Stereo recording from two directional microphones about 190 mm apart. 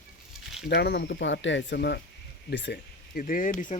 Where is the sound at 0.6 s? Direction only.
60° left (ahead or behind).